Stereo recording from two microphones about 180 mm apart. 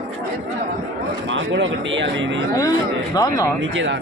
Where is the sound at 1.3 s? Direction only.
90° right.